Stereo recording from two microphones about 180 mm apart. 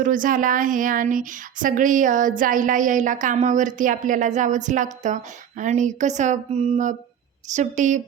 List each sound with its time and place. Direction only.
0.0 s speech: 50° right (ahead or behind)